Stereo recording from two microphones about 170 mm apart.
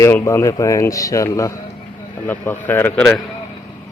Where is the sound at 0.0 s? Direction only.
15° left (ahead or behind).